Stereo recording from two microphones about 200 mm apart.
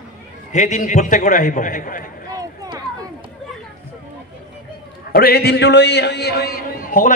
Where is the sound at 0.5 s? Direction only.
35° left (ahead or behind).